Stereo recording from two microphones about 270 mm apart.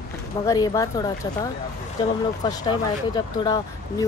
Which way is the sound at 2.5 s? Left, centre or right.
Centre.